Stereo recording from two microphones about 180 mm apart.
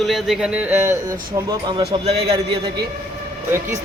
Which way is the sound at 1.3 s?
20° right (ahead or behind).